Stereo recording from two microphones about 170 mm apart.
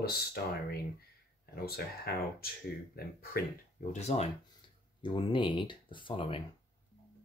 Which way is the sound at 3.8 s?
45° left (ahead or behind).